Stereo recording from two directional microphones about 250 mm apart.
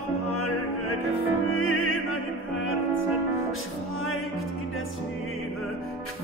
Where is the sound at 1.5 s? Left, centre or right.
Left.